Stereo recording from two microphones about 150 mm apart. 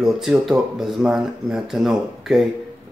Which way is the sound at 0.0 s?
Centre (ahead or behind).